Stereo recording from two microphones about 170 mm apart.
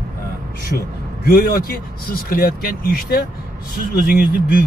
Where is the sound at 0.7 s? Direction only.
60° left (ahead or behind).